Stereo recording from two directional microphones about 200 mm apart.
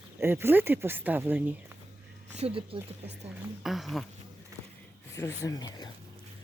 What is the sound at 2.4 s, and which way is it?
Speech, 30° right (ahead or behind).